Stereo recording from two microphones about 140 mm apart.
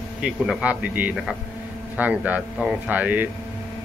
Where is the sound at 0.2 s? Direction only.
5° right (ahead or behind).